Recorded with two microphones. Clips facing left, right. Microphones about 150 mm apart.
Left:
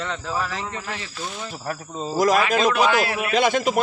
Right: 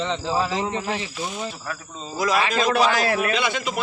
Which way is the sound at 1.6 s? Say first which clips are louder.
Left 5 dB; 45° left (ahead or behind).